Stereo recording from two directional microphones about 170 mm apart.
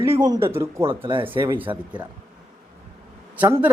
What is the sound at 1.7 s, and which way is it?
Speech, 20° right (ahead or behind).